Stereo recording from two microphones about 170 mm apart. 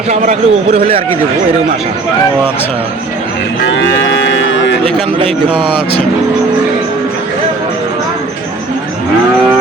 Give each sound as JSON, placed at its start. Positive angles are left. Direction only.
{"t": 0.1, "sound": "speech", "side_deg": -50}
{"t": 4.3, "sound": "a sound", "side_deg": 90}
{"t": 5.2, "sound": "speech", "side_deg": -30}